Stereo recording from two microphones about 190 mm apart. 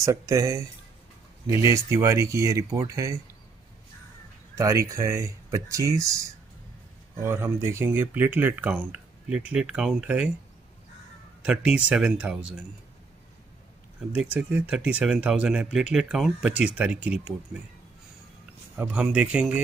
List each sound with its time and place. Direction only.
0.0 s speech: 15° right (ahead or behind)
4.6 s speech: 15° right (ahead or behind)
11.4 s speech: 5° right (ahead or behind)
14.1 s speech: 5° right (ahead or behind)
18.8 s speech: 5° right (ahead or behind)